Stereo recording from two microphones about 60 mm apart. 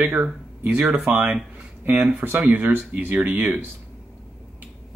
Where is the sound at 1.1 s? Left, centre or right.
Right.